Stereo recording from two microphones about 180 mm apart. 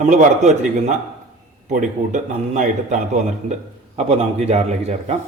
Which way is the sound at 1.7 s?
45° right (ahead or behind).